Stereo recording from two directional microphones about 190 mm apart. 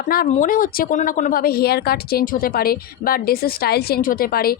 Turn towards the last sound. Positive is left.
turn(degrees=50)  # may be behind; listen again after turning